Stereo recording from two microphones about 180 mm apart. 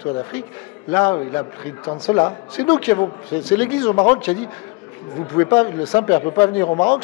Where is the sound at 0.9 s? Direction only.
15° left (ahead or behind).